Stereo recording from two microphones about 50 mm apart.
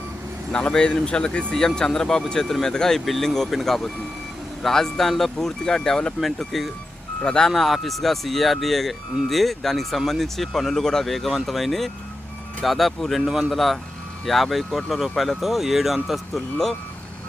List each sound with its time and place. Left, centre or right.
0.5 s speech: centre
1.6 s speech: centre
6.1 s speech: centre
7.2 s speech: centre
7.5 s speech: centre